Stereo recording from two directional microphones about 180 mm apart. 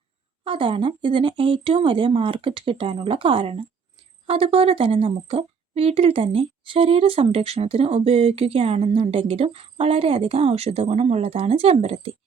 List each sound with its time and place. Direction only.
0.4 s a woman's voice: 30° right (ahead or behind)